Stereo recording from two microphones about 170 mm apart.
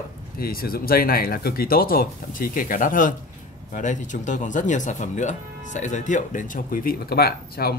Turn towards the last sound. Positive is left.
turn(degrees=65)  # may be behind; listen again after turning